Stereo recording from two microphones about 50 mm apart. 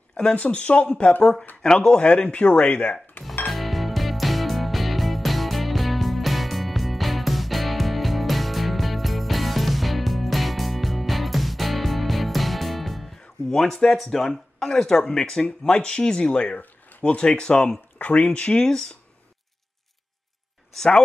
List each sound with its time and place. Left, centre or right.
0.4 s speech: left
3.4 s music: centre
13.5 s speech: centre
16.3 s speech: left
17.9 s speech: left; by 18.9 s centre
20.7 s speech: centre